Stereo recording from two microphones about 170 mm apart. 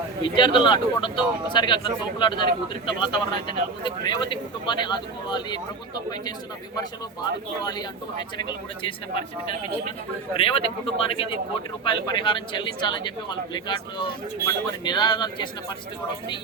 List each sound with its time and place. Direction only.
0.3 s speech: 30° left (ahead or behind)
7.6 s speech: 25° left (ahead or behind)
10.3 s speech: 35° left (ahead or behind)